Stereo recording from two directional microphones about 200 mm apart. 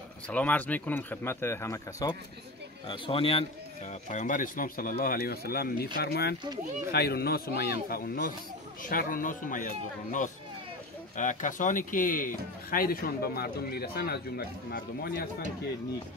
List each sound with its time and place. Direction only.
0.3 s speech: 5° left (ahead or behind)
2.9 s speech: 25° left (ahead or behind); by 15.2 s 50° left (ahead or behind)